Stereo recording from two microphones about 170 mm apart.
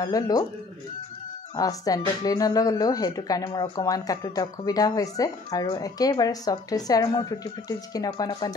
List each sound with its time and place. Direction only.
0.0 s speech: 20° left (ahead or behind)
1.6 s speech: 20° left (ahead or behind)